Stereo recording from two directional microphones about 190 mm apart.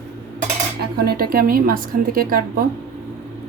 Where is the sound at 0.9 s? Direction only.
55° right (ahead or behind).